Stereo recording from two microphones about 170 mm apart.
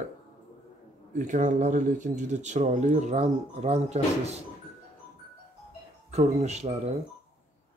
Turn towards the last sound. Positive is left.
turn(degrees=-40)  # may be behind; listen again after turning